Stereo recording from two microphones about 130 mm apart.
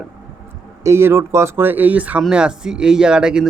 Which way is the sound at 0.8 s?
20° right (ahead or behind).